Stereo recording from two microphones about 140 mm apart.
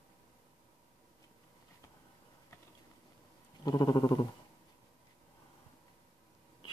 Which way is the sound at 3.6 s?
30° left (ahead or behind).